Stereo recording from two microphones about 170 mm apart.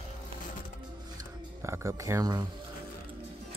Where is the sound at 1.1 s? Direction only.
15° right (ahead or behind).